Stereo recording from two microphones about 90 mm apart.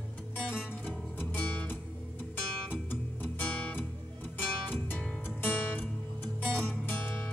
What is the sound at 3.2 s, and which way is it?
Music, 20° left (ahead or behind).